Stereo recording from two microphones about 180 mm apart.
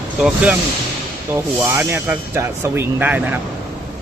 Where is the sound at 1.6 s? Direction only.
15° right (ahead or behind).